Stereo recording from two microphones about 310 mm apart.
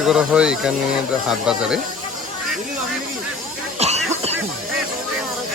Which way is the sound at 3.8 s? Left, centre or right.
Right.